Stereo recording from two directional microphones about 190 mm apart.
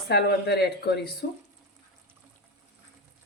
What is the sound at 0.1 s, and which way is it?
A woman's voice, 60° left (ahead or behind).